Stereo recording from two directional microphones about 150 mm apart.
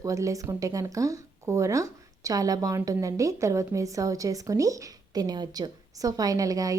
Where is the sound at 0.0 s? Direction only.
20° right (ahead or behind).